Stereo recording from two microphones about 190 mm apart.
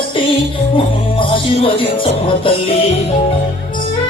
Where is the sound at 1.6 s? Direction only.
30° left (ahead or behind).